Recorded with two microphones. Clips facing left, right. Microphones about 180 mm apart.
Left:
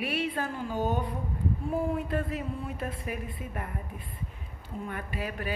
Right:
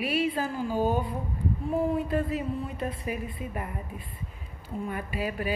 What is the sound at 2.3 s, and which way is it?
A woman's voice, 5° right (ahead or behind).